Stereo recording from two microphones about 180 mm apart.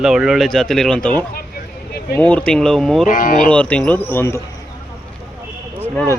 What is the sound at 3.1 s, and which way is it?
Speech, 50° left (ahead or behind).